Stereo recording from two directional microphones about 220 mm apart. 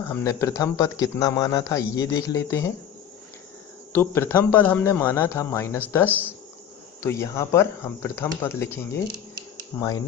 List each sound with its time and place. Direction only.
0.1 s a man's voice: 10° left (ahead or behind)
3.9 s a man's voice: 10° left (ahead or behind)
6.1 s speech: 10° right (ahead or behind)
7.0 s a man's voice: 15° left (ahead or behind)